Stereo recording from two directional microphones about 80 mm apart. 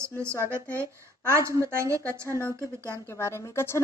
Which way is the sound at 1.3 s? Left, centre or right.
Right.